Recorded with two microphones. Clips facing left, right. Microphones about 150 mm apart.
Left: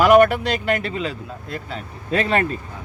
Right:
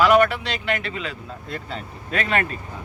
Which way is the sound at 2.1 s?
35° left (ahead or behind).